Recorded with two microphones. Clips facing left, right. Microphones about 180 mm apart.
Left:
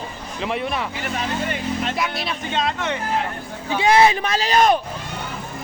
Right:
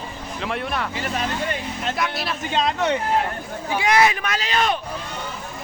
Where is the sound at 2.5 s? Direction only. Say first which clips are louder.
Right 3 dB; 40° right (ahead or behind).